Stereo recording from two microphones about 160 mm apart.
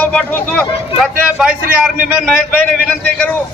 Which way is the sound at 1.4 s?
5° right (ahead or behind).